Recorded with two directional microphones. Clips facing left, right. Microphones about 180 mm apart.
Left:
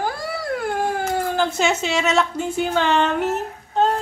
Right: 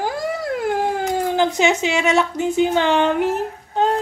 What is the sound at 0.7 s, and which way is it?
Speech, 20° right (ahead or behind).